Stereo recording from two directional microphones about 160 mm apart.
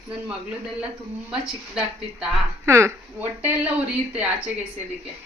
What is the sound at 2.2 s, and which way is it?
Speech, 15° right (ahead or behind).